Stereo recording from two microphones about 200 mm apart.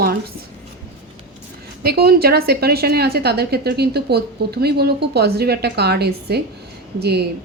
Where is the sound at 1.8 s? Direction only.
50° right (ahead or behind).